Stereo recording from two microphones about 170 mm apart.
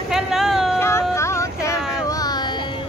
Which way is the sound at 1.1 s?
15° left (ahead or behind).